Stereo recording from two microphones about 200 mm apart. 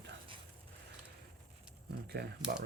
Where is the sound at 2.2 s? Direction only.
55° right (ahead or behind).